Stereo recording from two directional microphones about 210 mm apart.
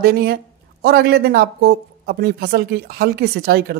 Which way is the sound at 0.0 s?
45° right (ahead or behind).